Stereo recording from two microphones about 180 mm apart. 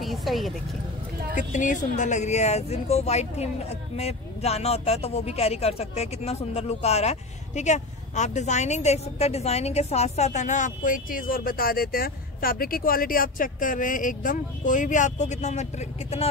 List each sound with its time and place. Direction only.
0.0 s vehicle: centre (ahead or behind)
1.3 s a woman's voice: 45° left (ahead or behind)